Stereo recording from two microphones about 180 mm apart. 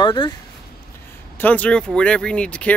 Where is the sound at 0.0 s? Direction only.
25° left (ahead or behind).